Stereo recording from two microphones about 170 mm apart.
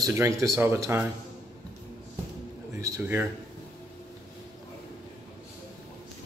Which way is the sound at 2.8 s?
15° right (ahead or behind).